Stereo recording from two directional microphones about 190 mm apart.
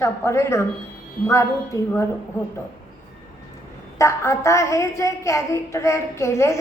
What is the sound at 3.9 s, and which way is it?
A woman's voice, 15° left (ahead or behind).